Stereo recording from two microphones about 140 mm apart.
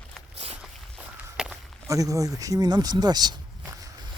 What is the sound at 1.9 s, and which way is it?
Speech, 25° right (ahead or behind).